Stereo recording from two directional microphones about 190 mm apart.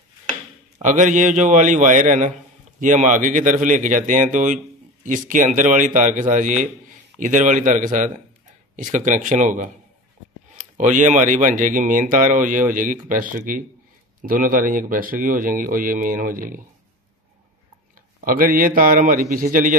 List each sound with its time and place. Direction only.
0.7 s a man's voice: 40° right (ahead or behind)
18.2 s speech: 50° right (ahead or behind)